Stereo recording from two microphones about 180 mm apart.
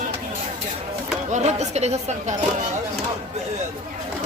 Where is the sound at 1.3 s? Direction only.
40° right (ahead or behind).